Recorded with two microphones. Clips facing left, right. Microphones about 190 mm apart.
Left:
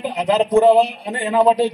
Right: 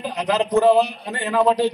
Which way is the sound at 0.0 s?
25° left (ahead or behind).